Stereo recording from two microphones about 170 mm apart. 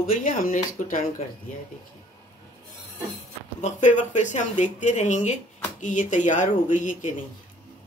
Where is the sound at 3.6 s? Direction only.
45° left (ahead or behind).